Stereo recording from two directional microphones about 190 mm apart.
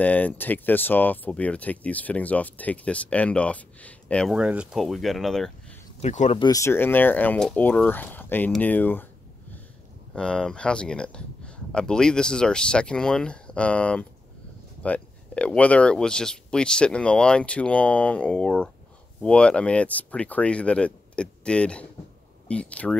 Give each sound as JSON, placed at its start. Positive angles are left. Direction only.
{"t": 0.0, "sound": "speech", "side_deg": 10}
{"t": 4.4, "sound": "speech", "side_deg": -5}
{"t": 5.9, "sound": "speech", "side_deg": 35}
{"t": 6.4, "sound": "speech", "side_deg": 15}
{"t": 10.1, "sound": "speech", "side_deg": 5}